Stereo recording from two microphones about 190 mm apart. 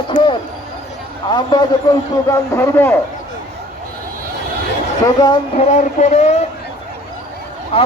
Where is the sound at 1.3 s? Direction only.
25° left (ahead or behind).